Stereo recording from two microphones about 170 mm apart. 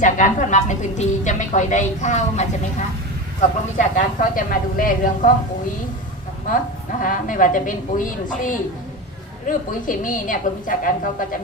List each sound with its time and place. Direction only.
0.0 s a sound: 50° left (ahead or behind)
3.8 s a woman's voice: 50° left (ahead or behind)
7.0 s a woman's voice: 50° left (ahead or behind)
9.5 s a woman's voice: 50° left (ahead or behind)